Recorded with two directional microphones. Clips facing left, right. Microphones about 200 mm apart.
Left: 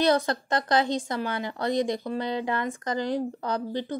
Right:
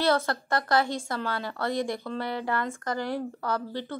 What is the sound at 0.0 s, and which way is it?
Speech, 20° left (ahead or behind).